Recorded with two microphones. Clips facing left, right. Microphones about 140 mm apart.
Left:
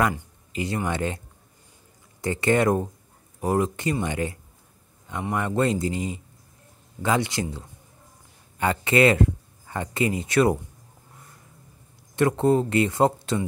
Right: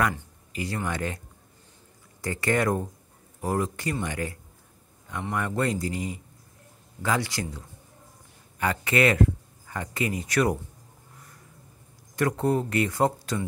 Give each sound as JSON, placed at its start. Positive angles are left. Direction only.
{"t": 0.5, "sound": "speech", "side_deg": 20}
{"t": 2.2, "sound": "speech", "side_deg": 20}
{"t": 12.2, "sound": "speech", "side_deg": 25}